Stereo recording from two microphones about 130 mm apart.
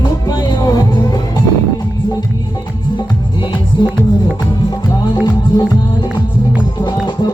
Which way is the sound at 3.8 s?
35° left (ahead or behind).